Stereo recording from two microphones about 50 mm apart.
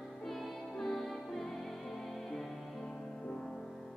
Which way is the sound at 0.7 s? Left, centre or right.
Centre.